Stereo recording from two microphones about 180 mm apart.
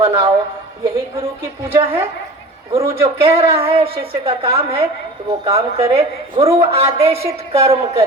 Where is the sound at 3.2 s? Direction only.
30° right (ahead or behind).